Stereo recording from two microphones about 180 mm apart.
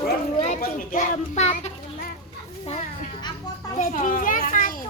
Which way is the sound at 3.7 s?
45° left (ahead or behind).